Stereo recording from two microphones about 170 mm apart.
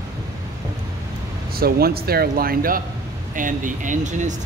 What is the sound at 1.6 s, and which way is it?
Speech, 65° right (ahead or behind).